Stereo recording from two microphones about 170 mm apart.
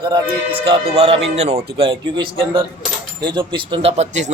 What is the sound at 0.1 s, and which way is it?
A man's voice, 30° right (ahead or behind).